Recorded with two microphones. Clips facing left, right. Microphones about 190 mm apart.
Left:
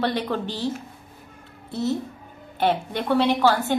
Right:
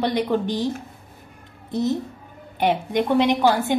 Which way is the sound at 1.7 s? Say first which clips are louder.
Right 2 dB; 15° right (ahead or behind).